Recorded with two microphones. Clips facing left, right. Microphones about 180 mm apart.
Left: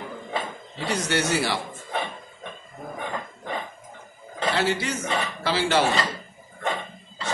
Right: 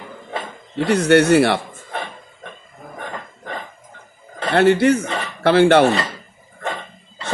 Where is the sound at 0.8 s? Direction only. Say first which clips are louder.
Right 12 dB; 60° right (ahead or behind).